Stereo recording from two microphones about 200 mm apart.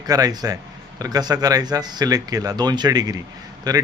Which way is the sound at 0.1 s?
20° right (ahead or behind).